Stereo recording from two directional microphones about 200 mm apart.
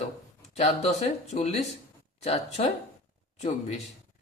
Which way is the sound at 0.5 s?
35° left (ahead or behind).